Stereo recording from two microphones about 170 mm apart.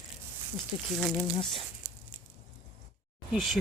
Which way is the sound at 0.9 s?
5° left (ahead or behind).